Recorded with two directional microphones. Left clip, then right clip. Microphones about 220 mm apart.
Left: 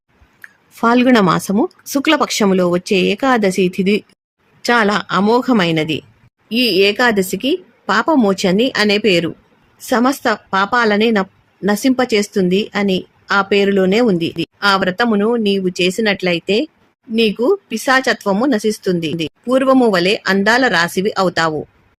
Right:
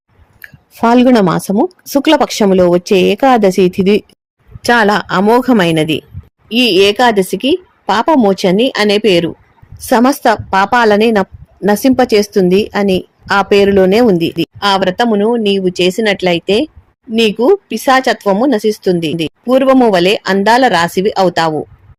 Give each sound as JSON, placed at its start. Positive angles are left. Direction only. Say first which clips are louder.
{"t": 0.7, "sound": "a woman's voice", "louder": "right 4 dB", "side_deg": -10}
{"t": 9.8, "sound": "a woman's voice", "louder": "right 5 dB", "side_deg": -20}